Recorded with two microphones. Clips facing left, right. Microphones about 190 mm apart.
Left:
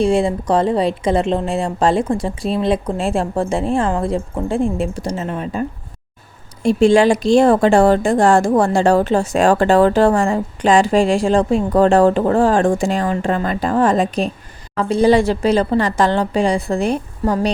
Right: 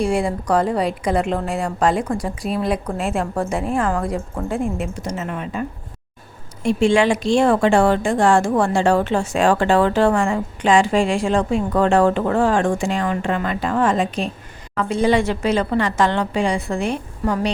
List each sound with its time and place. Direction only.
0.0 s a woman's voice: 25° left (ahead or behind)